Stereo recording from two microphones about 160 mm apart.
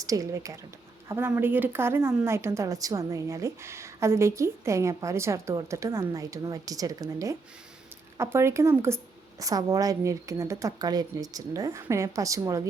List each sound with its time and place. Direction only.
0.0 s speech: 20° right (ahead or behind)